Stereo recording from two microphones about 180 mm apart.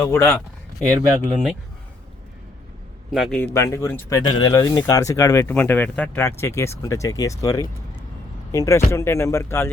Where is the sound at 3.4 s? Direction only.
15° left (ahead or behind).